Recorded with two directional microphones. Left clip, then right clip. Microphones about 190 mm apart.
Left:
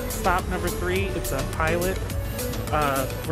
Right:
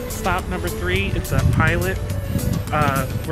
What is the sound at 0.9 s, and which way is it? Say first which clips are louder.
Speech: right 5 dB; centre (ahead or behind).